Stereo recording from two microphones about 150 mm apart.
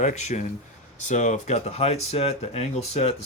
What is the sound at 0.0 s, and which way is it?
Speech, 50° left (ahead or behind).